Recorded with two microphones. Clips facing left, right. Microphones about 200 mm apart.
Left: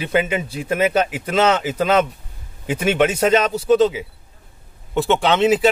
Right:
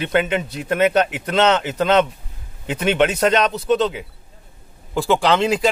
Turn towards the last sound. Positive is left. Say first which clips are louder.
# left 1 dB
turn(degrees=5)  # may be behind; listen again after turning